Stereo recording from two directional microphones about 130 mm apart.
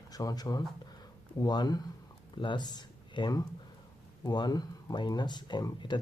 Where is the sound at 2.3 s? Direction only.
35° left (ahead or behind).